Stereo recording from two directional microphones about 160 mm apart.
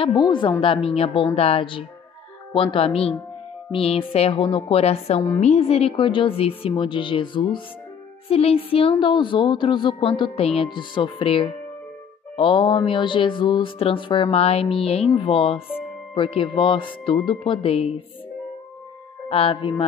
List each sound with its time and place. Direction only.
0.0 s speech: 30° left (ahead or behind)
19.2 s speech: 35° left (ahead or behind)